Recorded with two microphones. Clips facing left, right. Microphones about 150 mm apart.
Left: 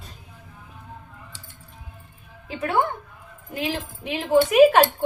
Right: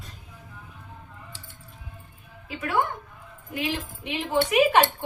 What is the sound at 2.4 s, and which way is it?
Speech, 30° left (ahead or behind).